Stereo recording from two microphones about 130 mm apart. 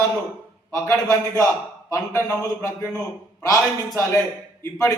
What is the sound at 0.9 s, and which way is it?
Speech, 25° left (ahead or behind).